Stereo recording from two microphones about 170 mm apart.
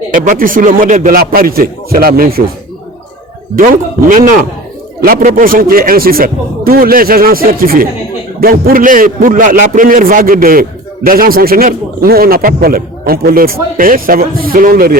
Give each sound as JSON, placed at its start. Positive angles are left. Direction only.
{"t": 0.1, "sound": "a man's voice", "side_deg": -55}
{"t": 3.5, "sound": "a man's voice", "side_deg": -50}